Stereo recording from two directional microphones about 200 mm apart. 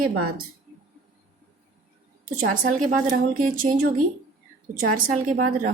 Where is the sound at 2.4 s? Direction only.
40° right (ahead or behind).